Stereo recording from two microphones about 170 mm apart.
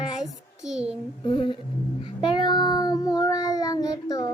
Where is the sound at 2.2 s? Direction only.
25° left (ahead or behind).